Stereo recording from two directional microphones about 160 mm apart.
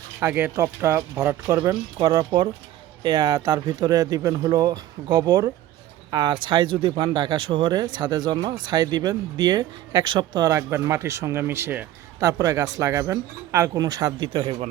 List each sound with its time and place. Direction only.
0.2 s speech: 10° right (ahead or behind)